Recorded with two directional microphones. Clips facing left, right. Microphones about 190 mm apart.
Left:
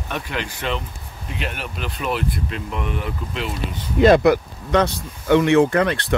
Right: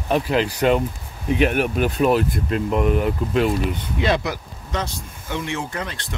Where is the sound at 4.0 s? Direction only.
55° left (ahead or behind).